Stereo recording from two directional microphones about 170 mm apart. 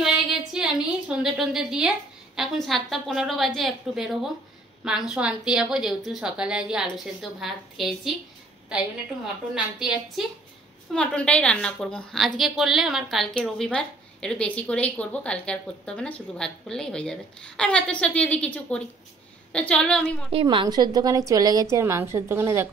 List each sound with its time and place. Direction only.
0.0 s a woman's voice: 5° right (ahead or behind)
20.3 s a woman's voice: 30° right (ahead or behind)